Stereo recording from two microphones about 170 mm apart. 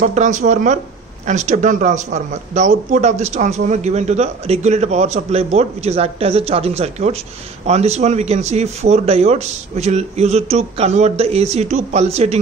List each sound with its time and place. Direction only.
0.0 s speech: 45° right (ahead or behind)